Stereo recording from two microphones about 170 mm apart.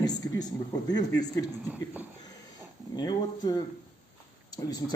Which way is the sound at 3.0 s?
25° left (ahead or behind).